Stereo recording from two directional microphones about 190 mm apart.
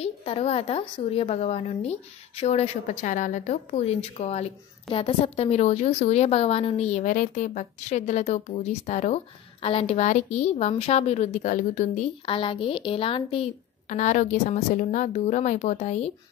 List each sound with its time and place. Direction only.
0.0 s a woman's voice: 30° left (ahead or behind)
12.3 s a woman's voice: 30° left (ahead or behind)